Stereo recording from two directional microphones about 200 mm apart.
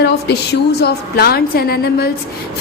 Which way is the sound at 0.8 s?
50° left (ahead or behind).